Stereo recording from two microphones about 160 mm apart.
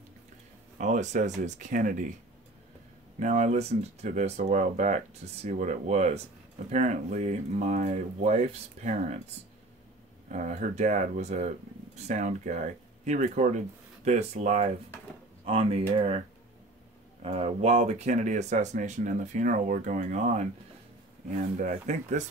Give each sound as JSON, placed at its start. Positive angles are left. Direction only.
{"t": 0.7, "sound": "speech", "side_deg": -50}
{"t": 3.2, "sound": "speech", "side_deg": -50}
{"t": 10.3, "sound": "speech", "side_deg": -50}
{"t": 17.2, "sound": "speech", "side_deg": -40}
{"t": 21.5, "sound": "speech", "side_deg": -50}